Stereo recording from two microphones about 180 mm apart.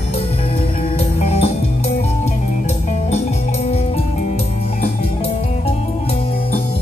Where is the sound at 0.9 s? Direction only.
35° left (ahead or behind).